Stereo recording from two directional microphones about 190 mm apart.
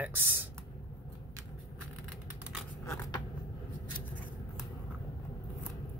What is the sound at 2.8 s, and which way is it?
Scissors, 15° left (ahead or behind).